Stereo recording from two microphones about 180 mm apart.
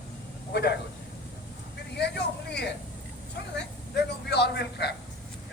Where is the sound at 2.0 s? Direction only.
65° left (ahead or behind).